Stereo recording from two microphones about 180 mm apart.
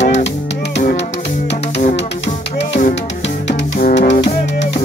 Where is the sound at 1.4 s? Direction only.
35° left (ahead or behind).